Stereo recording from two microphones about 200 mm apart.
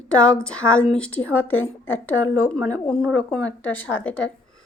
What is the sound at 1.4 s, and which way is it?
A woman's voice, 90° left.